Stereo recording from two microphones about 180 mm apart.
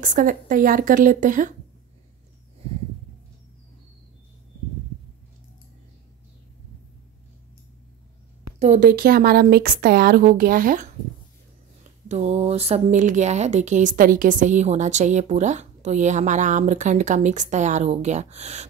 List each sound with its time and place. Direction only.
0.0 s a woman's voice: 45° right (ahead or behind)
8.5 s a woman's voice: 40° right (ahead or behind)
8.8 s speech: 55° right (ahead or behind)
12.1 s speech: 40° right (ahead or behind)